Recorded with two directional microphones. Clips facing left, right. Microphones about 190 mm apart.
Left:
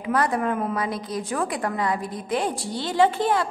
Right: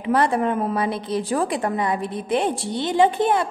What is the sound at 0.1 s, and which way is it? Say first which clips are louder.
A woman's voice: right 3 dB; 25° right (ahead or behind).